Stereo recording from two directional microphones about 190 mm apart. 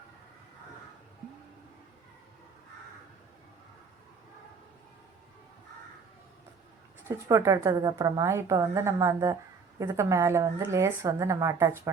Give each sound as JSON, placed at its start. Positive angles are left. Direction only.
{"t": 7.1, "sound": "a woman's voice", "side_deg": -15}